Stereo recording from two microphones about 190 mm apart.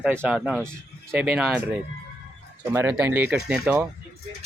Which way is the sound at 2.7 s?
10° right (ahead or behind).